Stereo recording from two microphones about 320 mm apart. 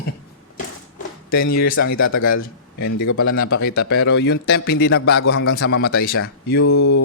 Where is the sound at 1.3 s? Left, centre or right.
Left.